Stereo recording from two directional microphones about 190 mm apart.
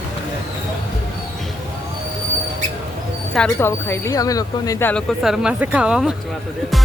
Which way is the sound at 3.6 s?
15° left (ahead or behind).